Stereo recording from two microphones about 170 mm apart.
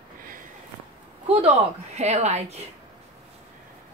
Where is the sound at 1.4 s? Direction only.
40° right (ahead or behind).